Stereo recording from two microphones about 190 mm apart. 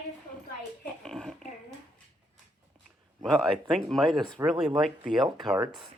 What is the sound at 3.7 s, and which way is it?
Speech, centre (ahead or behind).